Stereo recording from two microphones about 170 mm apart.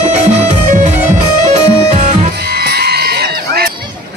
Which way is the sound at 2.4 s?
70° right (ahead or behind).